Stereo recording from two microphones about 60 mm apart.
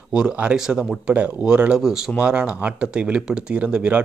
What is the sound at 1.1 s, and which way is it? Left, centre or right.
Speech, centre.